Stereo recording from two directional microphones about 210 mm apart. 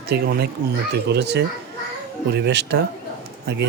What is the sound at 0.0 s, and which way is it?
Speech, 50° right (ahead or behind).